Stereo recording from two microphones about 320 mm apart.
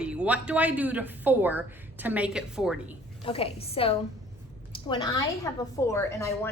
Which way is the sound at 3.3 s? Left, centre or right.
Centre.